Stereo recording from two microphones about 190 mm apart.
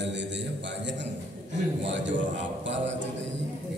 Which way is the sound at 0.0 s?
70° right (ahead or behind).